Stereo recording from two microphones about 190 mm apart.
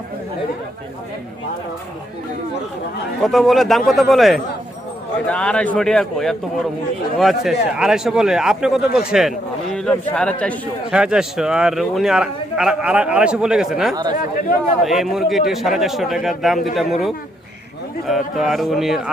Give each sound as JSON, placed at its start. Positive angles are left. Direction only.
{"t": 3.2, "sound": "a man's voice", "side_deg": 0}
{"t": 10.9, "sound": "a man's voice", "side_deg": -5}
{"t": 13.9, "sound": "speech", "side_deg": -20}
{"t": 14.8, "sound": "a man's voice", "side_deg": 0}